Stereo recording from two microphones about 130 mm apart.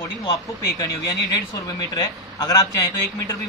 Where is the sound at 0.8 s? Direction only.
25° left (ahead or behind).